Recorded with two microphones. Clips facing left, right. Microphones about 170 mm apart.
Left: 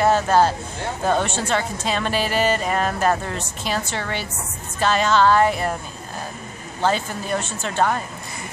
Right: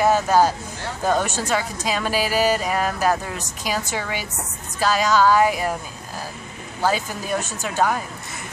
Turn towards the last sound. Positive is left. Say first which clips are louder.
# even
turn(degrees=-5)  # may be behind; listen again after turning